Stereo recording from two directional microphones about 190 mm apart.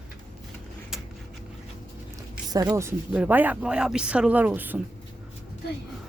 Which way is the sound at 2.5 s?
20° right (ahead or behind).